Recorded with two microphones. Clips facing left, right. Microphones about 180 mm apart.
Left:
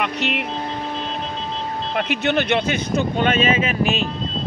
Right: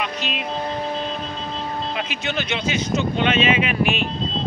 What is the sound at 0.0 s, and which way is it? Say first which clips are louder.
Speech: left 4 dB; 65° left (ahead or behind).